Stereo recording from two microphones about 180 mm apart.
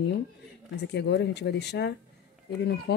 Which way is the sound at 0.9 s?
70° left (ahead or behind).